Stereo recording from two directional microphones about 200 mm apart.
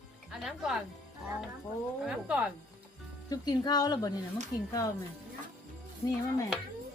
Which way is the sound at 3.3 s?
20° left (ahead or behind).